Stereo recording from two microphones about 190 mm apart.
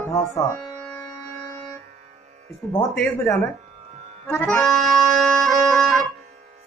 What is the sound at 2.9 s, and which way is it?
Speech, 5° left (ahead or behind).